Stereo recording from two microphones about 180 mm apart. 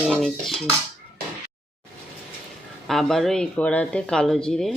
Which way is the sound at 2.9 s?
Centre (ahead or behind).